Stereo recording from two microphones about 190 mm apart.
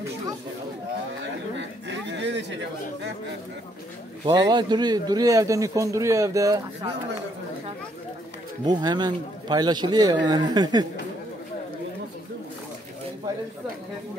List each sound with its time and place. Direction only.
1.6 s a sound: 65° right (ahead or behind)
4.3 s a man's voice: 20° right (ahead or behind)
8.6 s a man's voice: 20° right (ahead or behind)